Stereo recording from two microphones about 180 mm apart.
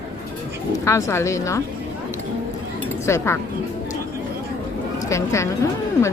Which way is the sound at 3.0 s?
15° left (ahead or behind).